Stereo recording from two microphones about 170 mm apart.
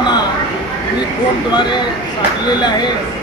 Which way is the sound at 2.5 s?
25° left (ahead or behind).